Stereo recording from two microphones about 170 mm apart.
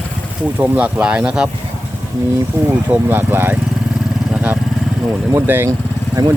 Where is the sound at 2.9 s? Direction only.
10° right (ahead or behind).